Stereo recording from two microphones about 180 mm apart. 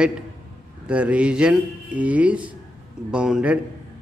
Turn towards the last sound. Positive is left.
turn(degrees=-5)  # may be behind; listen again after turning